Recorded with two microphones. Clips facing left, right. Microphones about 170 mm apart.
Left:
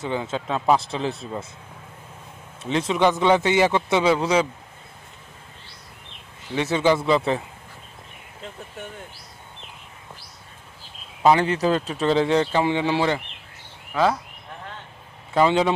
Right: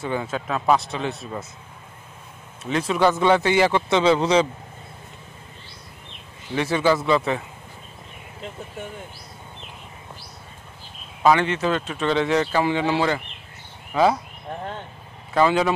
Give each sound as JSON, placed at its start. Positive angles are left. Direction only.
{"t": 0.0, "sound": "speech", "side_deg": 20}
{"t": 2.7, "sound": "a man's voice", "side_deg": 25}
{"t": 6.5, "sound": "speech", "side_deg": 20}
{"t": 11.2, "sound": "speech", "side_deg": 35}
{"t": 13.9, "sound": "speech", "side_deg": 0}
{"t": 15.3, "sound": "speech", "side_deg": 20}